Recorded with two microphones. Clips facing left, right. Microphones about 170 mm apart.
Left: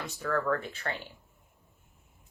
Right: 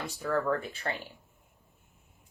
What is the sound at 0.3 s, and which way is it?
Speech, 20° right (ahead or behind).